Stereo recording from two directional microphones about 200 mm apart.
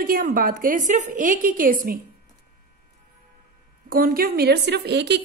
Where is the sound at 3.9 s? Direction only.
45° right (ahead or behind).